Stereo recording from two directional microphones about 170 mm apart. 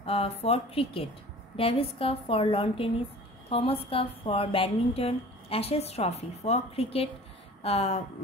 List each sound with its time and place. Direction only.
0.0 s a woman's voice: 35° left (ahead or behind)